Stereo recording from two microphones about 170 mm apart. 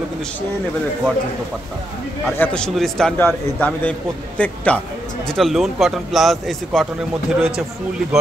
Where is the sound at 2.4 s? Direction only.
5° left (ahead or behind).